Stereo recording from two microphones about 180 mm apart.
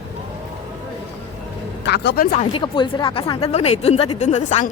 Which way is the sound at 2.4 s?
30° left (ahead or behind).